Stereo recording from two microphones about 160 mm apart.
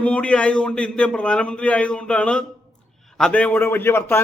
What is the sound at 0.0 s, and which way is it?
A man's voice, 5° left (ahead or behind).